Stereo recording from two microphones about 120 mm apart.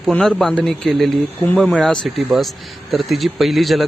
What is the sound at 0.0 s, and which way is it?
A man's voice, 5° left (ahead or behind).